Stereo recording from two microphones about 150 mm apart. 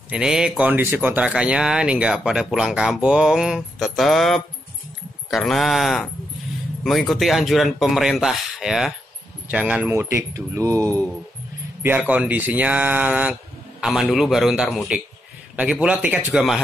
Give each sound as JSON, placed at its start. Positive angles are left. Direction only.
{"t": 0.1, "sound": "speech", "side_deg": -5}